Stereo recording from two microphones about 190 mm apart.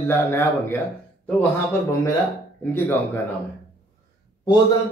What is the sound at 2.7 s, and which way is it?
Speech, 10° left (ahead or behind).